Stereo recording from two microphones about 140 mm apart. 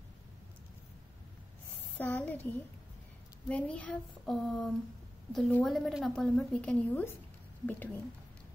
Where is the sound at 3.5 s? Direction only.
10° left (ahead or behind).